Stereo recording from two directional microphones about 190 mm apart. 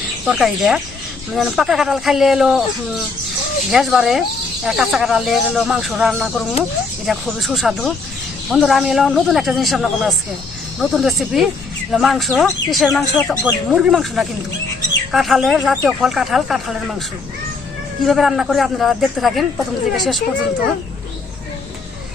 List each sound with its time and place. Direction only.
0.3 s a man's voice: centre (ahead or behind)
3.7 s a man's voice: centre (ahead or behind)
18.0 s a man's voice: centre (ahead or behind)